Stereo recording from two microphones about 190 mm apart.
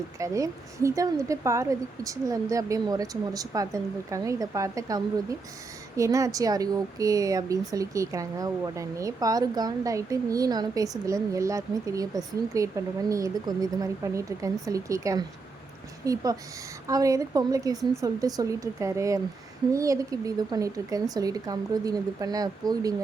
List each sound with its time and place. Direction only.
0.2 s speech: 15° right (ahead or behind)